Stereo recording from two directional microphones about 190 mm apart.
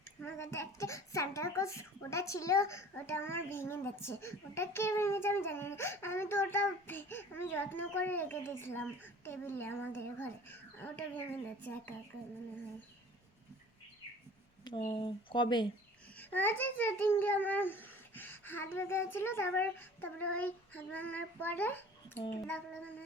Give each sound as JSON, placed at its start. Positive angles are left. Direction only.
{"t": 0.2, "sound": "a sound", "side_deg": 10}
{"t": 0.5, "sound": "a woman's voice", "side_deg": 15}
{"t": 14.8, "sound": "speech", "side_deg": 25}
{"t": 16.1, "sound": "a woman's voice", "side_deg": 10}